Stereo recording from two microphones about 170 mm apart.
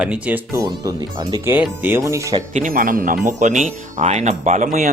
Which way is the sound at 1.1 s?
25° right (ahead or behind).